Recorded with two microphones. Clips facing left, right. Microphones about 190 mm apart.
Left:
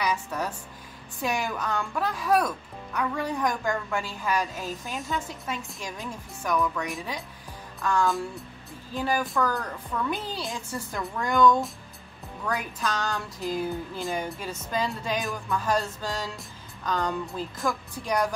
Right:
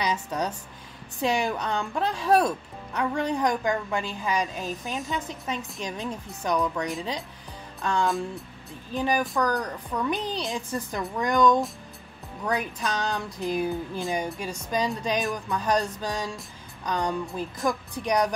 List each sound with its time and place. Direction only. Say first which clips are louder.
0.0 s speech: right 1 dB; 20° right (ahead or behind)